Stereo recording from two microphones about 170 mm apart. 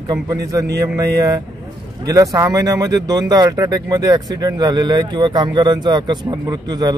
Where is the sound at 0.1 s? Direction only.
20° right (ahead or behind).